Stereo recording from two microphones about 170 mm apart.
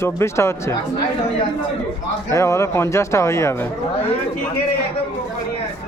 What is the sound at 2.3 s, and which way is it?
A man's voice, 15° left (ahead or behind).